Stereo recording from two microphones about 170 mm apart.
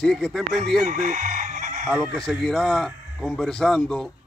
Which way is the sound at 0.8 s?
50° right (ahead or behind).